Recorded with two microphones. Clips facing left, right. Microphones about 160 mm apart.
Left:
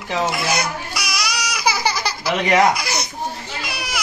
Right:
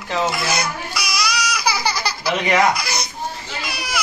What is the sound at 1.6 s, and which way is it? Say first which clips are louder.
Laughter: left 4 dB; 20° left (ahead or behind).